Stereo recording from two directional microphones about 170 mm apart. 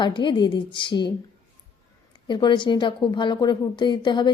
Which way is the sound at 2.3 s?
30° left (ahead or behind).